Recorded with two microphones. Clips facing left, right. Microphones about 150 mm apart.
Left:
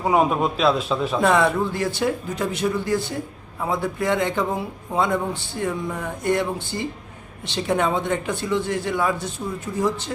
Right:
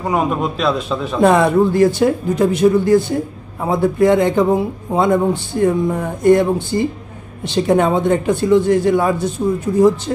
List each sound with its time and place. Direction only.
0.0 s a man's voice: centre (ahead or behind)
1.2 s speech: 40° right (ahead or behind)